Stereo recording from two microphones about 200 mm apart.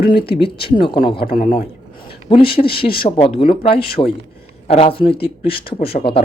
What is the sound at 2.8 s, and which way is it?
Speech, 25° left (ahead or behind).